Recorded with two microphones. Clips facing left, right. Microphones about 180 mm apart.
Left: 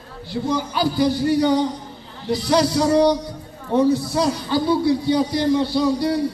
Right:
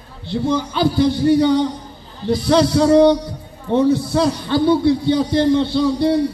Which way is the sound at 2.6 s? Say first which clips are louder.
Right 5 dB; 25° right (ahead or behind).